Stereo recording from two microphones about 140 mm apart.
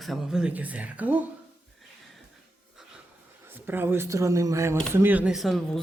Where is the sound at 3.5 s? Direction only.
15° right (ahead or behind).